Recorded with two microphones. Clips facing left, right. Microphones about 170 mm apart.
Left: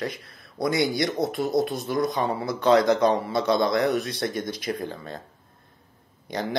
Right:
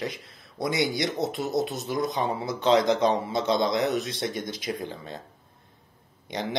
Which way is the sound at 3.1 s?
20° right (ahead or behind).